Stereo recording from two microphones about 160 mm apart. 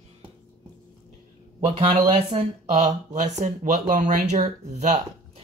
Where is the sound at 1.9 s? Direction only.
35° right (ahead or behind).